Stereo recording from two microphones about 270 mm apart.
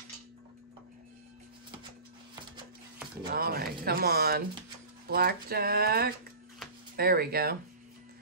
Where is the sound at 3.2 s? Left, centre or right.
Right.